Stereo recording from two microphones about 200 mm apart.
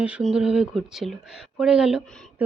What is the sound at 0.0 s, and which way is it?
Speech, 5° right (ahead or behind).